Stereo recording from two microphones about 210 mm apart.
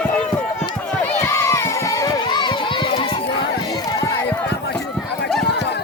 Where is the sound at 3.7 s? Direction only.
15° left (ahead or behind).